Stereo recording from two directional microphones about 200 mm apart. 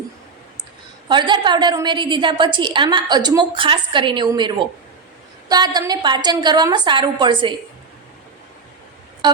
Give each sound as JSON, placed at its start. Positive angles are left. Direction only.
{"t": 1.0, "sound": "a woman's voice", "side_deg": -20}